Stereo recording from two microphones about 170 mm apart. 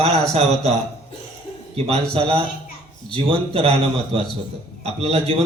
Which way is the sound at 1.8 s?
35° right (ahead or behind).